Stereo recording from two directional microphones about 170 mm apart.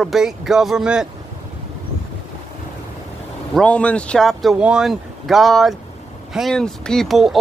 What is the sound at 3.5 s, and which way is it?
Speech, 5° left (ahead or behind).